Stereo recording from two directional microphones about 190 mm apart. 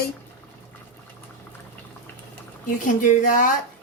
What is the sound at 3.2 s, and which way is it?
Speech, 45° left (ahead or behind).